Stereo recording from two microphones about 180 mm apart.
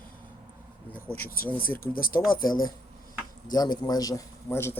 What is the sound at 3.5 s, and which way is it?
A man's voice, 20° left (ahead or behind).